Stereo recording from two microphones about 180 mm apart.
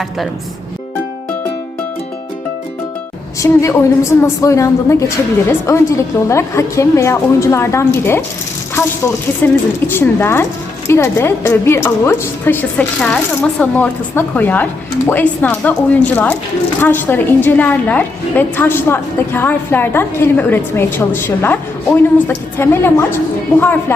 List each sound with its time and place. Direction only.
3.4 s a woman's voice: 15° left (ahead or behind)
9.4 s a woman's voice: 10° left (ahead or behind)